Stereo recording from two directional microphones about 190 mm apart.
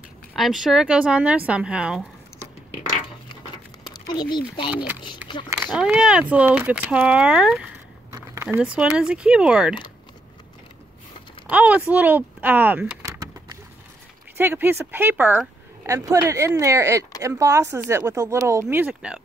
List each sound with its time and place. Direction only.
0.3 s speech: centre (ahead or behind)
4.1 s speech: 25° left (ahead or behind)
5.7 s speech: 5° right (ahead or behind)
11.4 s speech: 5° right (ahead or behind)
13.0 s a sound: 15° right (ahead or behind)
14.3 s speech: 10° right (ahead or behind)